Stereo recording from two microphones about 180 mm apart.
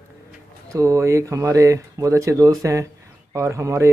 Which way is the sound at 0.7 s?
15° right (ahead or behind).